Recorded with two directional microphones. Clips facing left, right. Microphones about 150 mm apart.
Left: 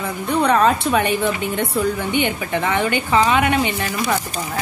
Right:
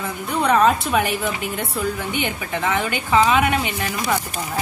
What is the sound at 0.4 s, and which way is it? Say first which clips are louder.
A woman's voice: even; 5° right (ahead or behind).